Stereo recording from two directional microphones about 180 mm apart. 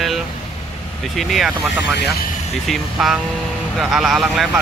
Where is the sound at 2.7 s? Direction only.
Centre (ahead or behind).